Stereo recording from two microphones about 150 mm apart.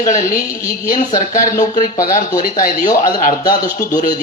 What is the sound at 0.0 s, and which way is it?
Speech, 60° left (ahead or behind).